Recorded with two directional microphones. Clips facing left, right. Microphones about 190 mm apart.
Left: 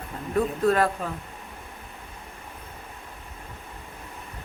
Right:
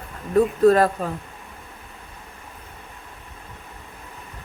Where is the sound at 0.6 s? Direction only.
40° right (ahead or behind).